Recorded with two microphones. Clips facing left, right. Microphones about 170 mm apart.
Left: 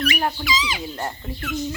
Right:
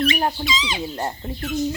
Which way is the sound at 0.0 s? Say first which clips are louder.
Right 2 dB; 25° right (ahead or behind).